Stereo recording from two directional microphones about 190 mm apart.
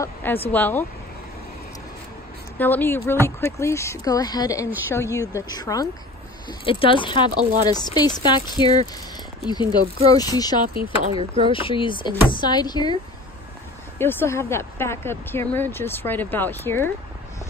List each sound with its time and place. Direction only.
0.0 s speech: 10° left (ahead or behind)
2.5 s speech: 10° left (ahead or behind)
11.1 s speech: 25° right (ahead or behind)
11.5 s speech: 25° left (ahead or behind)
13.9 s speech: 10° left (ahead or behind)